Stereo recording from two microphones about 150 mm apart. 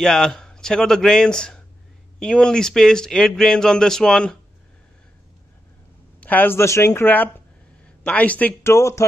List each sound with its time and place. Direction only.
0.0 s speech: 5° left (ahead or behind)
6.2 s speech: 10° left (ahead or behind)